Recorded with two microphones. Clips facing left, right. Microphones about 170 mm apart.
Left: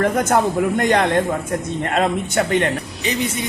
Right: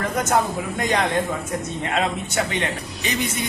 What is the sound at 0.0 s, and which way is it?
A man's voice, 55° left (ahead or behind).